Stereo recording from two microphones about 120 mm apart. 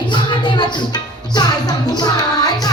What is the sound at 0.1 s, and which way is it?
Music, 40° left (ahead or behind).